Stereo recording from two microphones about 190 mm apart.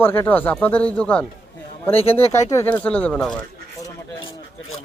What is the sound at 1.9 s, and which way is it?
Speech, 30° left (ahead or behind).